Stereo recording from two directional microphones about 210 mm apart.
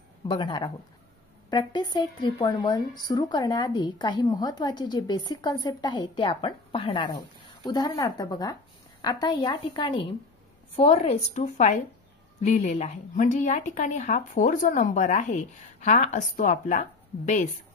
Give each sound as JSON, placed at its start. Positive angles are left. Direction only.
{"t": 0.3, "sound": "speech", "side_deg": 20}